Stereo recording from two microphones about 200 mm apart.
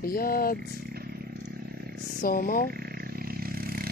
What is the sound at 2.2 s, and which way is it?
Speech, 45° left (ahead or behind).